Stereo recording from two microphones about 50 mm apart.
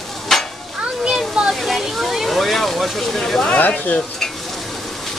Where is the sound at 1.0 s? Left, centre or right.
Centre.